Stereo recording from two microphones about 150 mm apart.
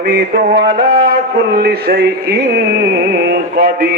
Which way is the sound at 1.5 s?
90° right.